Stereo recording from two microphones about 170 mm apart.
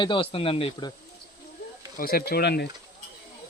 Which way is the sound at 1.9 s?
60° left (ahead or behind).